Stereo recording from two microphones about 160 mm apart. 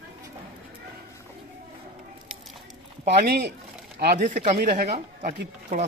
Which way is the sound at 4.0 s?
75° right (ahead or behind).